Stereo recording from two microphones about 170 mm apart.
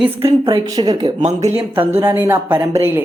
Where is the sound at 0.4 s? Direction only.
20° right (ahead or behind).